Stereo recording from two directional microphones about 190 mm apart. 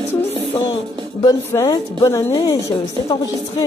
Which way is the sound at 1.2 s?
20° left (ahead or behind).